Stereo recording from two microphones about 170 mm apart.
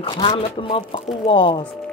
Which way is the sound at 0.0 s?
30° left (ahead or behind).